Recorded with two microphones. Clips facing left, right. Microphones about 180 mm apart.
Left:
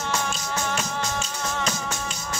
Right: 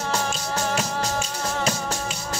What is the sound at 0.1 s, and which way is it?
Music, 35° right (ahead or behind).